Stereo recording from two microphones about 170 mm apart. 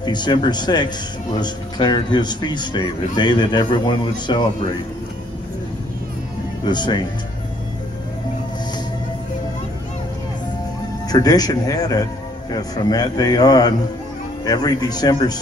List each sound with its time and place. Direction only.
0.0 s speech: 25° left (ahead or behind)
6.6 s speech: 25° left (ahead or behind)
11.1 s speech: 20° left (ahead or behind)